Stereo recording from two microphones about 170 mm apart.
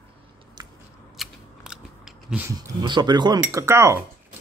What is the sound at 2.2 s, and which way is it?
Speech, 10° right (ahead or behind).